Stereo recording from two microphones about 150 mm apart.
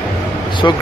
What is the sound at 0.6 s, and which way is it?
Speech, 25° left (ahead or behind).